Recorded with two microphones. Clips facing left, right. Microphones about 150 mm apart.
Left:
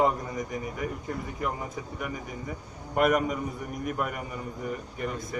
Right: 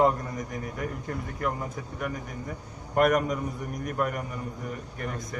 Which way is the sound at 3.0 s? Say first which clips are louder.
Right 1 dB; centre (ahead or behind).